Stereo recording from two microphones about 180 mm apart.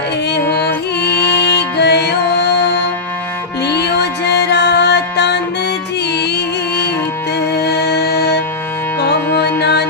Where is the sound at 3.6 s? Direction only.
65° left (ahead or behind).